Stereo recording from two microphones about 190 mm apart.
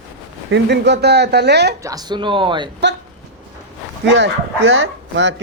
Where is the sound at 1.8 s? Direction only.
20° right (ahead or behind).